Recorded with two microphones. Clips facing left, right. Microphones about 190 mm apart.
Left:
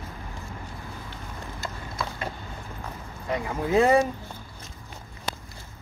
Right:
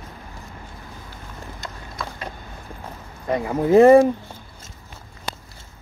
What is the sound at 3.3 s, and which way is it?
Speech, 25° right (ahead or behind).